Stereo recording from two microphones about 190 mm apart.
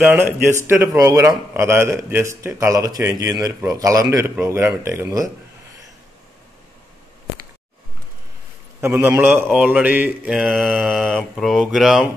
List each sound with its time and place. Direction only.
0.0 s a man's voice: 10° right (ahead or behind)
8.8 s speech: 15° right (ahead or behind)